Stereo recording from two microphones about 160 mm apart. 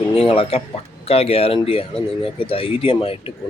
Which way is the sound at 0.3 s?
35° left (ahead or behind).